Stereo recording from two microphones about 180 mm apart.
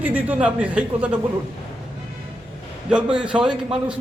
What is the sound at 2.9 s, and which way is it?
Speech, 5° right (ahead or behind).